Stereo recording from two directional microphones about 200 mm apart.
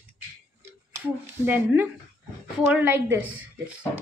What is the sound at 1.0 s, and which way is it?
A woman's voice, 10° right (ahead or behind).